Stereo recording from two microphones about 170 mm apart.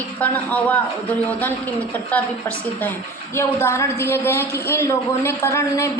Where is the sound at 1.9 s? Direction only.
10° left (ahead or behind).